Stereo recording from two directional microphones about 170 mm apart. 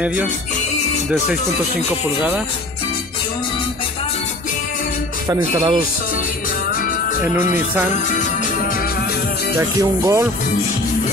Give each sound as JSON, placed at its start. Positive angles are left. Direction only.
{"t": 0.0, "sound": "music", "side_deg": -10}
{"t": 5.3, "sound": "speech", "side_deg": -30}
{"t": 8.1, "sound": "music", "side_deg": 50}
{"t": 9.6, "sound": "music", "side_deg": -20}